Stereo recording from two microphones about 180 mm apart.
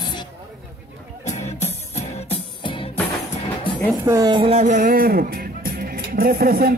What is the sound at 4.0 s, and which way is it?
Speech, 20° right (ahead or behind).